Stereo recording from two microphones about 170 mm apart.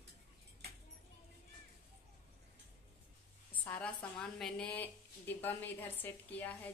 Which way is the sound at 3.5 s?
10° left (ahead or behind).